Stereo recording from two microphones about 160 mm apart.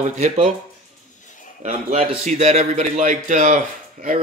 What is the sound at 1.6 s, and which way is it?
Speech, 55° right (ahead or behind).